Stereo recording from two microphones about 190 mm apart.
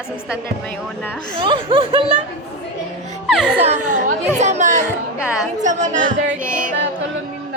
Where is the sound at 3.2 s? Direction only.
Centre (ahead or behind).